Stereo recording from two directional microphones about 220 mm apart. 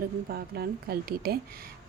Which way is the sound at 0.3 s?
45° right (ahead or behind).